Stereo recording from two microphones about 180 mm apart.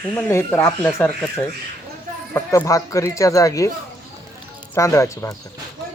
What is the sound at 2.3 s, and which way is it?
Speech, 15° left (ahead or behind).